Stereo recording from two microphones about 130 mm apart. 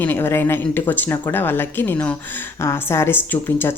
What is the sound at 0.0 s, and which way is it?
A woman's voice, 15° left (ahead or behind).